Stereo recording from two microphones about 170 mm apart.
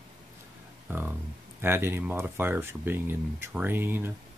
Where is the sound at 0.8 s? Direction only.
10° right (ahead or behind).